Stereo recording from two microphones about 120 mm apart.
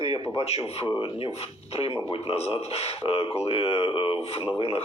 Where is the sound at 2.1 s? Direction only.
50° left (ahead or behind).